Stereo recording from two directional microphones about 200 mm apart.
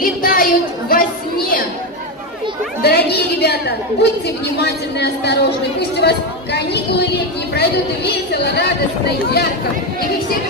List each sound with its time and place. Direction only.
0.0 s a sound: 45° left (ahead or behind)
2.8 s chatter: 50° left (ahead or behind)
4.6 s a woman's voice: 55° left (ahead or behind)